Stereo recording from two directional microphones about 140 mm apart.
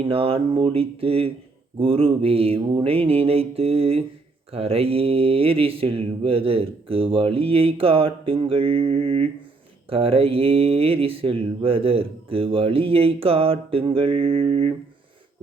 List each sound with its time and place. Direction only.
0.0 s speech: 40° right (ahead or behind)